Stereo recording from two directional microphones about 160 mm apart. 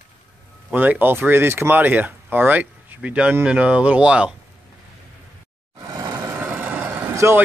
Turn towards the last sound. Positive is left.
turn(degrees=-15)  # may be behind; listen again after turning